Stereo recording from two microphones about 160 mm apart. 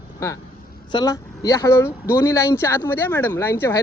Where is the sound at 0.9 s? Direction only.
25° left (ahead or behind).